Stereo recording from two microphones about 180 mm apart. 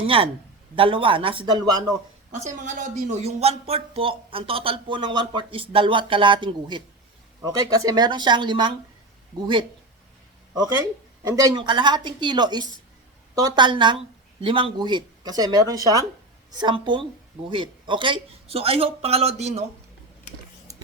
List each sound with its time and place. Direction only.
0.0 s a man's voice: 30° right (ahead or behind)
2.4 s a man's voice: 45° right (ahead or behind); by 9.6 s 25° right (ahead or behind)
11.2 s a man's voice: 20° right (ahead or behind); by 19.6 s 40° right (ahead or behind)
20.7 s a sound: 20° right (ahead or behind)